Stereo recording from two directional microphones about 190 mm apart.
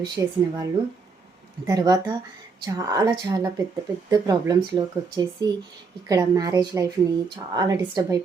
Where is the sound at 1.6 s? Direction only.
20° right (ahead or behind).